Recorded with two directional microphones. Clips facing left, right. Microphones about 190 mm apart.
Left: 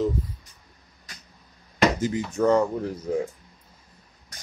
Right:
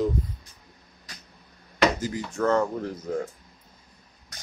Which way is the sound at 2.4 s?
10° left (ahead or behind).